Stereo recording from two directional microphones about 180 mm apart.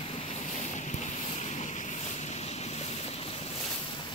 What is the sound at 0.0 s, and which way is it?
Boat, 35° left (ahead or behind).